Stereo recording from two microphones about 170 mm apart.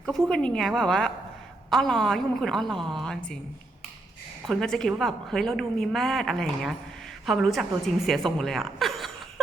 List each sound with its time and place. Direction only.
0.0 s a woman's voice: 5° left (ahead or behind)
4.4 s a woman's voice: 5° left (ahead or behind)